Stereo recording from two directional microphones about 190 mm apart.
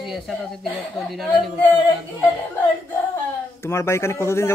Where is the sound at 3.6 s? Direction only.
15° left (ahead or behind).